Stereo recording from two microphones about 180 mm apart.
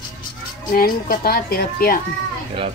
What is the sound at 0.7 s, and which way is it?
A woman's voice, 55° left (ahead or behind).